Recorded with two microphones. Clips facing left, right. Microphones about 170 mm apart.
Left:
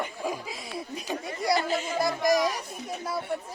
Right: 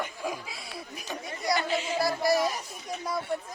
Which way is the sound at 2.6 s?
55° left (ahead or behind).